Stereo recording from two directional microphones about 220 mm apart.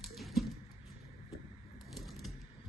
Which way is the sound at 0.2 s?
Centre (ahead or behind).